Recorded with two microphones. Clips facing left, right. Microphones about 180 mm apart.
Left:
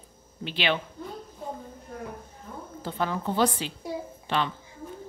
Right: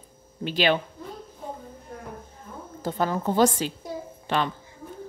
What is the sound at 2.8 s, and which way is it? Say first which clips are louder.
A woman's voice: right 4 dB; 40° right (ahead or behind).